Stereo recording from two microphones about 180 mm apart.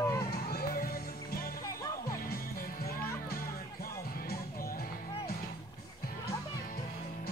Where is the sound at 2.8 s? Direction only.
55° left (ahead or behind).